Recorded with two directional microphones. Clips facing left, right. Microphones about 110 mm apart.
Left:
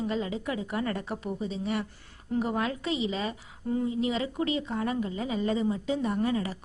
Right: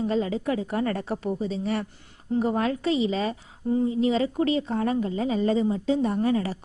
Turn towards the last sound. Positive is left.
turn(degrees=-35)  # may be behind; listen again after turning